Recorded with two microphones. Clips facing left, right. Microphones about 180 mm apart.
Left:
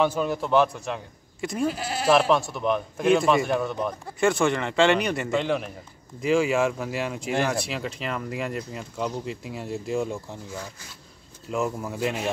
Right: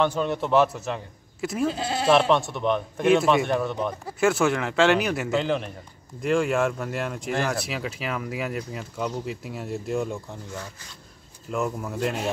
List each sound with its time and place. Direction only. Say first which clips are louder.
0.0 s speech: even; 5° left (ahead or behind)
1.7 s speech: right 2 dB; 25° right (ahead or behind)
2.0 s speech: even; centre (ahead or behind)